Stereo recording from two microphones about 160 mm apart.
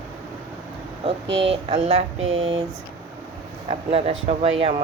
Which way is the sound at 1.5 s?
45° right (ahead or behind).